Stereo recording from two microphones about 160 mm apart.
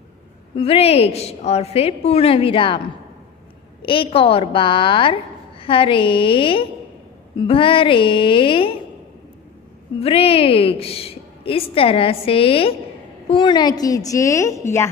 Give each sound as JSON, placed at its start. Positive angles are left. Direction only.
{"t": 0.6, "sound": "a woman's voice", "side_deg": 35}
{"t": 3.8, "sound": "a woman's voice", "side_deg": 35}
{"t": 9.9, "sound": "a woman's voice", "side_deg": 35}